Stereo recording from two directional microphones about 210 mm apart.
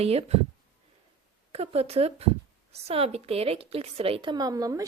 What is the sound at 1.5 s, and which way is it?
Speech, 30° right (ahead or behind).